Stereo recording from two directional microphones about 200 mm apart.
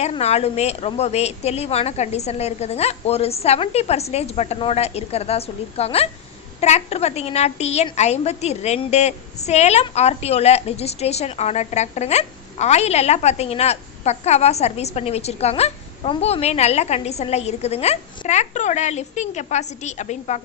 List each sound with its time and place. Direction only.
0.0 s a woman's voice: 30° left (ahead or behind)